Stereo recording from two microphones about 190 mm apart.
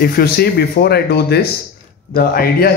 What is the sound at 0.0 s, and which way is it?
A man's voice, 55° left (ahead or behind).